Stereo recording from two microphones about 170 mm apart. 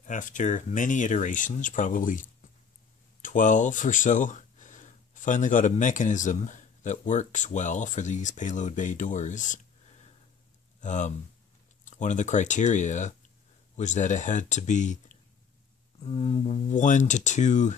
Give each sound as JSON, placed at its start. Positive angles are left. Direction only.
{"t": 0.0, "sound": "speech", "side_deg": 50}